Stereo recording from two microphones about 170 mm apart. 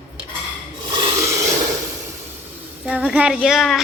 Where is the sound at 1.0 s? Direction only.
15° right (ahead or behind).